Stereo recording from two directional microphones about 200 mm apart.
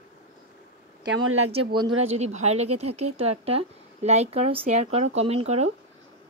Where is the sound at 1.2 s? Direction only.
90° right.